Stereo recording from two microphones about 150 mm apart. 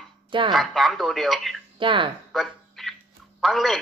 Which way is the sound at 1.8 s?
35° right (ahead or behind).